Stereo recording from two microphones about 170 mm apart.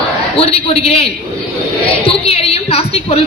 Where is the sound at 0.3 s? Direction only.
35° left (ahead or behind).